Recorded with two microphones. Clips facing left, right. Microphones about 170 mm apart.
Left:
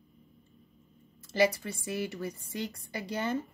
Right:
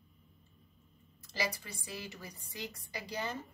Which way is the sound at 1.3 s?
60° left (ahead or behind).